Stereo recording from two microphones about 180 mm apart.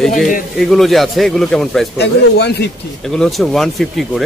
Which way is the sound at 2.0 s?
65° left (ahead or behind).